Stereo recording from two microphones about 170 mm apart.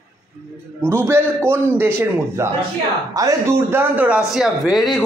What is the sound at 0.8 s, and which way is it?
Speech, 15° right (ahead or behind).